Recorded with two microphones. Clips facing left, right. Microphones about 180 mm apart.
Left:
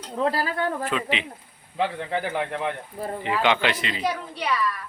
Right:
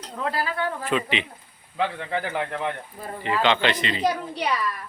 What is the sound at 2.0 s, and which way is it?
Speech, 15° left (ahead or behind).